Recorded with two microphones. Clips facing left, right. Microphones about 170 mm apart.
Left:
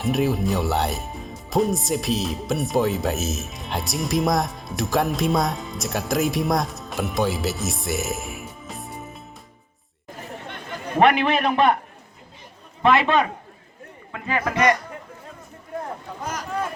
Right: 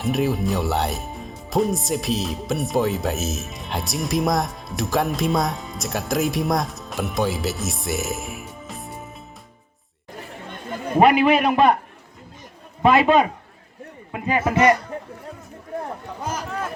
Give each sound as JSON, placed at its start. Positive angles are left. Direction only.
{"t": 0.0, "sound": "speech", "side_deg": 0}
{"t": 11.0, "sound": "speech", "side_deg": -5}
{"t": 12.9, "sound": "a man's voice", "side_deg": -35}
{"t": 14.1, "sound": "a man's voice", "side_deg": -20}